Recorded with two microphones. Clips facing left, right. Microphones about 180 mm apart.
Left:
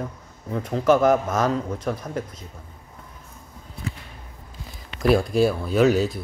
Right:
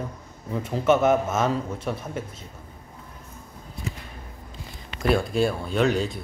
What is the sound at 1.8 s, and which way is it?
Speech, 5° right (ahead or behind).